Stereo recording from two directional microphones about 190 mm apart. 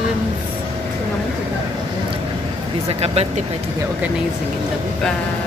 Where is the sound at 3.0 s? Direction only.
35° right (ahead or behind).